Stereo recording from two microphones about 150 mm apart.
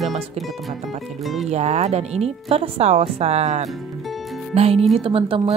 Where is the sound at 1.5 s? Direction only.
50° right (ahead or behind).